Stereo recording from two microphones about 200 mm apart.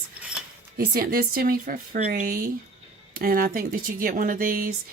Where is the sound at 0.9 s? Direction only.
50° right (ahead or behind).